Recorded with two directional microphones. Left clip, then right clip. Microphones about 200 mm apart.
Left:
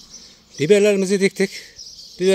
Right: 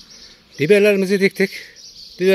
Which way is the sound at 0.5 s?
Centre (ahead or behind).